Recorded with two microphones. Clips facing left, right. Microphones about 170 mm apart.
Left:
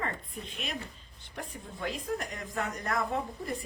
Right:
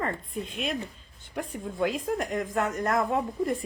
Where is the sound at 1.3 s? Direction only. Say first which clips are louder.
Right 10 dB; 50° right (ahead or behind).